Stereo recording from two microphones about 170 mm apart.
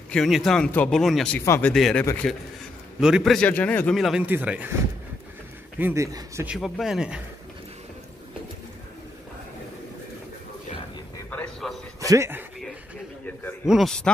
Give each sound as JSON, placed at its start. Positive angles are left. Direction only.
{"t": 0.1, "sound": "a man's voice", "side_deg": 0}
{"t": 1.4, "sound": "speech", "side_deg": 15}
{"t": 1.7, "sound": "a man's voice", "side_deg": 5}
{"t": 5.8, "sound": "a man's voice", "side_deg": -10}
{"t": 11.2, "sound": "a sound", "side_deg": 5}
{"t": 12.0, "sound": "speech", "side_deg": -15}
{"t": 13.7, "sound": "a man's voice", "side_deg": 0}